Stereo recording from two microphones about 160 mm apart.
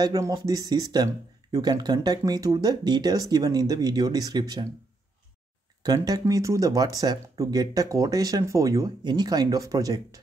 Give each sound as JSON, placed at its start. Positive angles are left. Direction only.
{"t": 0.0, "sound": "speech", "side_deg": -25}
{"t": 5.8, "sound": "speech", "side_deg": -25}